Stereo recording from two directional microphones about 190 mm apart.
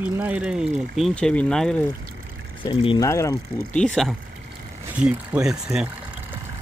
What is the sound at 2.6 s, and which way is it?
Speech, 25° left (ahead or behind).